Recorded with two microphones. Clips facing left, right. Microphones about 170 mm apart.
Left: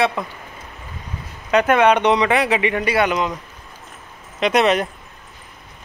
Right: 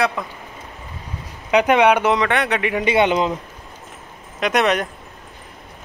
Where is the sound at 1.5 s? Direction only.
15° right (ahead or behind); by 2.8 s centre (ahead or behind).